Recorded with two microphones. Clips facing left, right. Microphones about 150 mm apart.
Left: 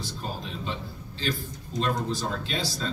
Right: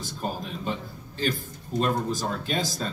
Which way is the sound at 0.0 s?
50° right (ahead or behind).